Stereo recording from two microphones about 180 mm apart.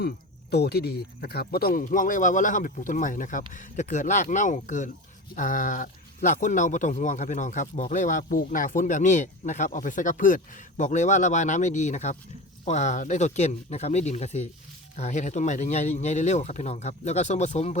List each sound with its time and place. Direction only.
0.5 s speech: 65° left (ahead or behind); by 17.7 s 40° left (ahead or behind)